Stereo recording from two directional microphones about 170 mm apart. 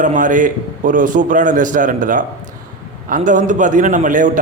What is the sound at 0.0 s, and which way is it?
A man's voice, 50° right (ahead or behind).